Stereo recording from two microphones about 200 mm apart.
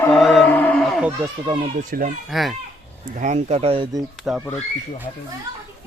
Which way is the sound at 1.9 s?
45° right (ahead or behind).